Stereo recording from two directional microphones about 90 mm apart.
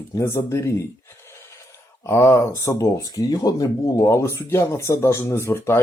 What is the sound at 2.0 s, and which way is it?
Speech, 30° left (ahead or behind).